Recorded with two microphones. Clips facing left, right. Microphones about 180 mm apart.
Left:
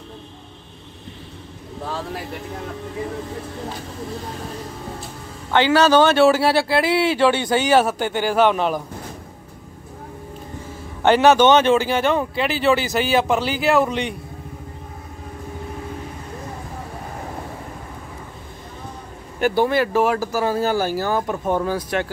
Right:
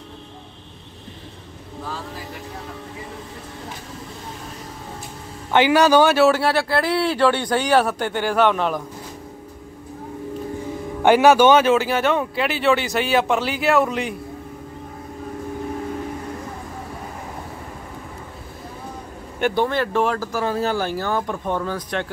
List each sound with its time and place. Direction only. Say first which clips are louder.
5.5 s a man's voice: even; 15° right (ahead or behind); by 6.5 s centre (ahead or behind)
6.5 s speech: left 2 dB; 30° left (ahead or behind)
7.2 s speech: left 1 dB; 5° left (ahead or behind)
11.0 s speech: right 1 dB; 10° right (ahead or behind)
19.4 s speech: left 2 dB; 5° left (ahead or behind)